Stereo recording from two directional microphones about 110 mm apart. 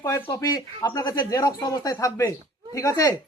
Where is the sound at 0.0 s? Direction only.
25° left (ahead or behind).